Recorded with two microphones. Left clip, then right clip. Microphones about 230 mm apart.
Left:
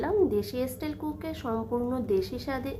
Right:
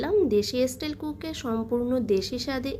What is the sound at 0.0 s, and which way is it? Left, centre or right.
A woman's voice, centre.